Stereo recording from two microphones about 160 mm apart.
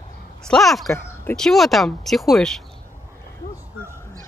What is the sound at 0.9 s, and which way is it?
Speech, 10° left (ahead or behind).